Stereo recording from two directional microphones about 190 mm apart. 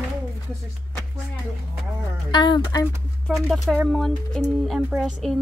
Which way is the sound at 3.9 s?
Centre (ahead or behind).